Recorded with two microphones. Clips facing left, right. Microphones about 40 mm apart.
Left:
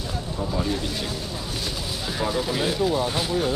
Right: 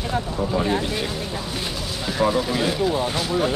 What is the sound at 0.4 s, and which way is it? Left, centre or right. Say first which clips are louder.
Speech: right 3 dB; right.